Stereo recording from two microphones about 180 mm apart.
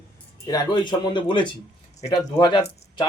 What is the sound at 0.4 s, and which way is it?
Speech, 20° left (ahead or behind).